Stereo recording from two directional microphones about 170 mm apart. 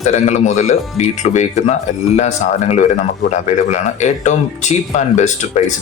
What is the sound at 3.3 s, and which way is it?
Speech, 45° left (ahead or behind).